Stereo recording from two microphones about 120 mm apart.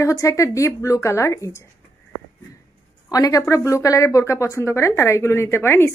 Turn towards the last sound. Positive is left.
turn(degrees=20)  # may be behind; listen again after turning